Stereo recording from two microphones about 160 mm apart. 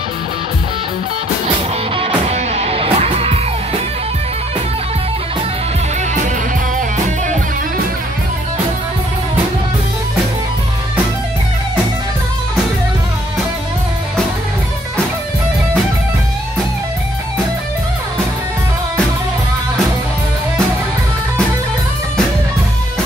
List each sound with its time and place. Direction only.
2.0 s music: 40° right (ahead or behind)